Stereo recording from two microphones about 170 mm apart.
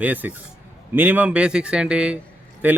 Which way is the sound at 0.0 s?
10° right (ahead or behind).